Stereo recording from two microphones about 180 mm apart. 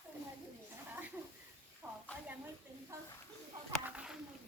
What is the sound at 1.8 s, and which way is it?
Snake, 10° right (ahead or behind).